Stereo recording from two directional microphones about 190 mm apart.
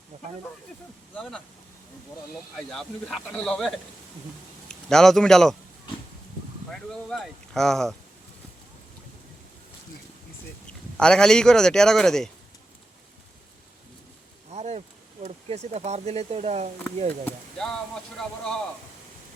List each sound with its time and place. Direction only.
0.1 s snake: 35° right (ahead or behind)
1.1 s speech: 5° left (ahead or behind)
2.6 s speech: centre (ahead or behind)
4.7 s a man's voice: 5° left (ahead or behind)
6.7 s speech: 5° left (ahead or behind)
10.7 s speech: 5° left (ahead or behind)
14.5 s a sound: 35° right (ahead or behind)
15.2 s speech: 35° right (ahead or behind)
17.2 s speech: 5° left (ahead or behind)